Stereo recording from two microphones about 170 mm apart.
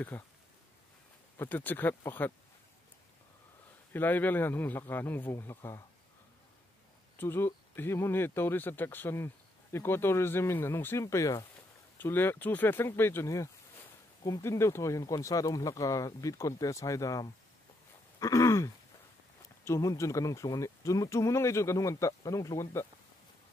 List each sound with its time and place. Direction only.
0.1 s speech: 10° left (ahead or behind)
1.4 s speech: 10° left (ahead or behind)
3.9 s speech: 10° left (ahead or behind)
7.2 s speech: 15° left (ahead or behind)